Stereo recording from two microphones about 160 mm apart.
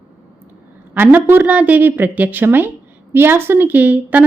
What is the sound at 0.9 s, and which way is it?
A woman's voice, 10° right (ahead or behind).